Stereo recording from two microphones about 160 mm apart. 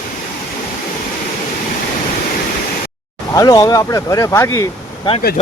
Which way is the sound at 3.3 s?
25° left (ahead or behind).